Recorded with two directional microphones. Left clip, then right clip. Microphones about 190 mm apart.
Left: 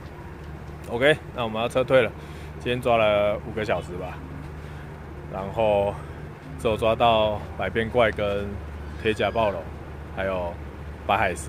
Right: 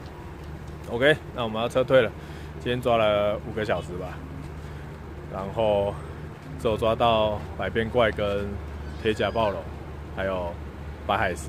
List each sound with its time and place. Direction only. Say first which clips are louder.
0.8 s speech: left 1 dB; 10° left (ahead or behind)
5.3 s speech: left 2 dB; 10° left (ahead or behind)